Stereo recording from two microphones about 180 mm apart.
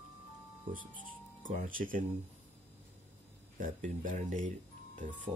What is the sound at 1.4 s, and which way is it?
Speech, 50° right (ahead or behind).